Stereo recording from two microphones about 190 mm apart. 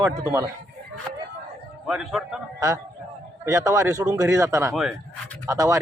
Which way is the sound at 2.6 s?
15° right (ahead or behind).